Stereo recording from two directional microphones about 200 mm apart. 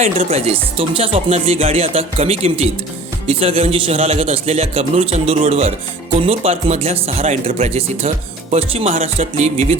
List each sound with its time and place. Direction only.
0.0 s a man's voice: 30° right (ahead or behind)